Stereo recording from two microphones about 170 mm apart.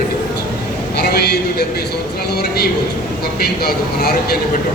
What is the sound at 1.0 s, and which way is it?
Speech, 70° left (ahead or behind).